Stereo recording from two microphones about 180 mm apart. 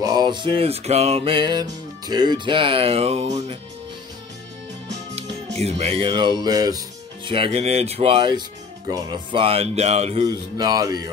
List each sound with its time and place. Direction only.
0.0 s music: 20° right (ahead or behind)
5.1 s music: 35° right (ahead or behind); by 6.8 s 20° right (ahead or behind)
7.2 s speech: 30° right (ahead or behind)
10.2 s music: 20° right (ahead or behind)